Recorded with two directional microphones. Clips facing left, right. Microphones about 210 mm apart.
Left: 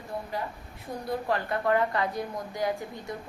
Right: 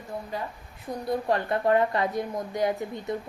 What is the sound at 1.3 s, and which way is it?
Speech, 25° right (ahead or behind).